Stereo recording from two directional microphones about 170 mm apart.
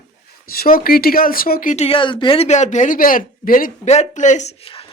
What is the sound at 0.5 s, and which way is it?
Speech, 60° left (ahead or behind).